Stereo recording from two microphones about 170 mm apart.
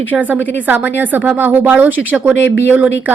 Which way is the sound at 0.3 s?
90° left.